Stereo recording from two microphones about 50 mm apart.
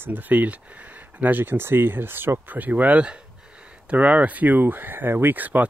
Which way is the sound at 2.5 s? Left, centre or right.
Right.